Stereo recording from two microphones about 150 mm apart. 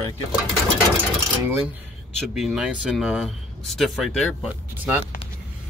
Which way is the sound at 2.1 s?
Centre (ahead or behind).